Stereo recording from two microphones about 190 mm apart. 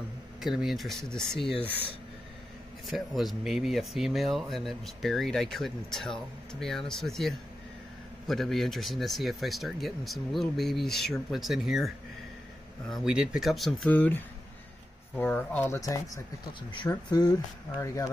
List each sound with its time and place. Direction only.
0.4 s speech: centre (ahead or behind)
2.9 s speech: centre (ahead or behind)
12.9 s speech: 5° right (ahead or behind); by 18.1 s 15° left (ahead or behind)